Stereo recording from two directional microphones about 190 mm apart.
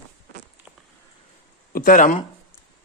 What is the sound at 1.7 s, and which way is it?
Speech, 45° left (ahead or behind).